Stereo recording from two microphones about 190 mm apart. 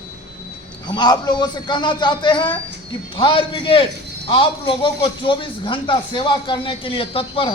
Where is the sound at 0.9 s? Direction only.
20° left (ahead or behind).